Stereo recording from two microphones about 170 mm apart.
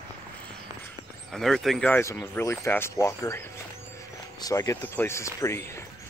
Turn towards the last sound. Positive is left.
turn(degrees=15)  # may be behind; listen again after turning